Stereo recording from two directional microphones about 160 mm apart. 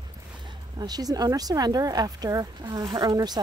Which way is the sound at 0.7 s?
25° right (ahead or behind).